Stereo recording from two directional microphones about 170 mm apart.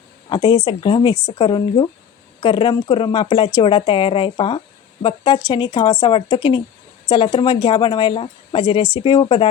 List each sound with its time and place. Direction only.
0.3 s a woman's voice: 30° left (ahead or behind)